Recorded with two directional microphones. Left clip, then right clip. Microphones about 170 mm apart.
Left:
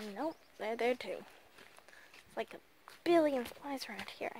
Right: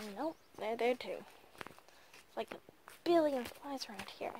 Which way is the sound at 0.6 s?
15° left (ahead or behind).